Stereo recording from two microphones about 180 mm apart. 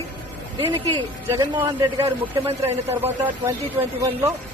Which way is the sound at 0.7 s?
25° right (ahead or behind).